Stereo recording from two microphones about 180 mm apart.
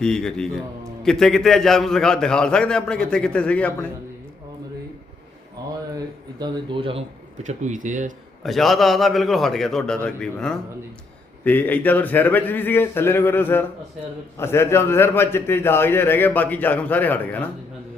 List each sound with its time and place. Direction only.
0.0 s a man's voice: 5° left (ahead or behind)
6.4 s speech: 30° right (ahead or behind)
7.4 s speech: 45° right (ahead or behind)
8.4 s a man's voice: centre (ahead or behind)